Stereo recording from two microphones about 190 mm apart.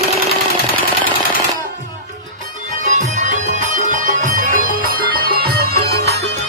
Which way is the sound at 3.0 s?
40° right (ahead or behind).